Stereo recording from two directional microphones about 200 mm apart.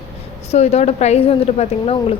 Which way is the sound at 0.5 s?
35° left (ahead or behind).